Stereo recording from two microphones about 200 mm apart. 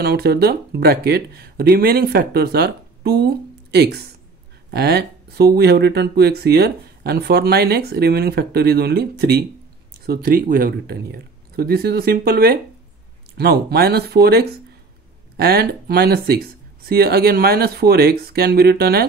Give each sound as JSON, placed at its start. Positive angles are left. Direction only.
{"t": 0.0, "sound": "speech", "side_deg": -55}